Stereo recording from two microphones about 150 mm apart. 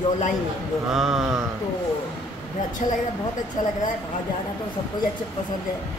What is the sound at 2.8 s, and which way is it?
Speech, 50° left (ahead or behind).